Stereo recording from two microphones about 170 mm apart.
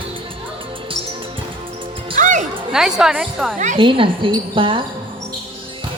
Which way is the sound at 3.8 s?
30° right (ahead or behind).